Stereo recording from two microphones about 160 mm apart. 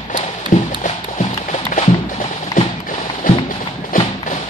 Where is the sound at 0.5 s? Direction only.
50° left (ahead or behind).